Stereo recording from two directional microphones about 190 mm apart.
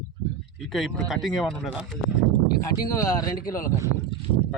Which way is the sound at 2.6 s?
20° left (ahead or behind).